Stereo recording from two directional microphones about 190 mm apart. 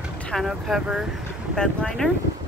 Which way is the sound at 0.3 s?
Centre (ahead or behind).